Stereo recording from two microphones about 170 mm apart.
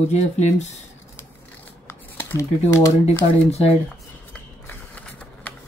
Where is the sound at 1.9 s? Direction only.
15° left (ahead or behind).